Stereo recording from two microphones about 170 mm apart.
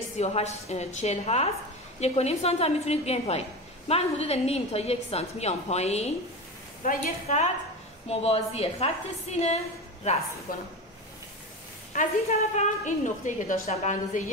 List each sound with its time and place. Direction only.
0.2 s a woman's voice: 40° left (ahead or behind)
6.8 s a woman's voice: 50° left (ahead or behind)
10.5 s speech: 55° left (ahead or behind)
11.9 s a woman's voice: 45° left (ahead or behind)